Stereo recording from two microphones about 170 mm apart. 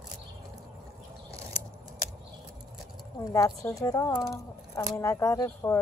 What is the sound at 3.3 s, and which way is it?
Speech, 20° left (ahead or behind).